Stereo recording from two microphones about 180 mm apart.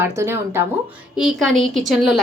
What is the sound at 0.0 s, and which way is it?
Speech, 15° right (ahead or behind).